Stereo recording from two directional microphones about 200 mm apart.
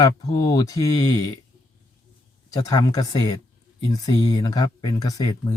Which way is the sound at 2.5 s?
20° left (ahead or behind).